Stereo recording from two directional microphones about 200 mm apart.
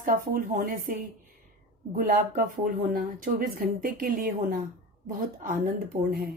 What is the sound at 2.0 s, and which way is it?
A woman's voice, 45° right (ahead or behind).